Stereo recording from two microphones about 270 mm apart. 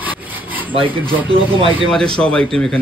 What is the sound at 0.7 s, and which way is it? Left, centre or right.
Speech, centre.